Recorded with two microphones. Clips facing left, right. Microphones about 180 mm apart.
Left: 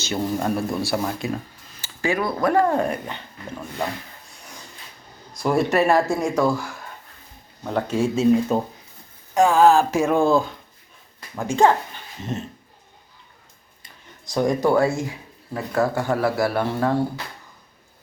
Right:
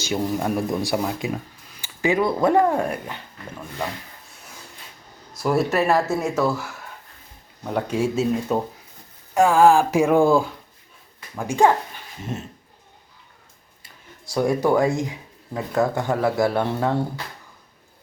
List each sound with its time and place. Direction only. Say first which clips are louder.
0.0 s speech: even; 10° right (ahead or behind)
5.3 s speech: left 1 dB; 5° right (ahead or behind)
13.8 s speech: right 1 dB; 5° right (ahead or behind)